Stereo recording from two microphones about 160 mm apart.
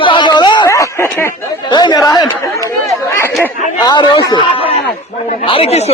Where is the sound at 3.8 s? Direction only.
30° left (ahead or behind).